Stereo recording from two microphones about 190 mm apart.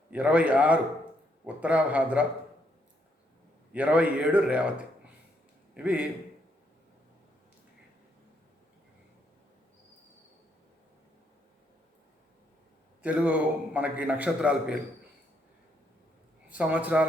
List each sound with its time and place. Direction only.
0.1 s a man's voice: 5° right (ahead or behind)
3.7 s a man's voice: 5° right (ahead or behind)
5.7 s a man's voice: 5° right (ahead or behind)
13.0 s a man's voice: 5° right (ahead or behind)
16.5 s a man's voice: 5° right (ahead or behind)